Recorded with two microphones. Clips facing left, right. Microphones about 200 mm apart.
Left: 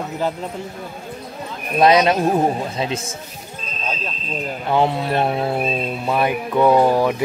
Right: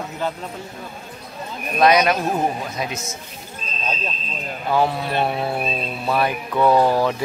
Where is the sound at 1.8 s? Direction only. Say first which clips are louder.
Left 2 dB; 25° left (ahead or behind).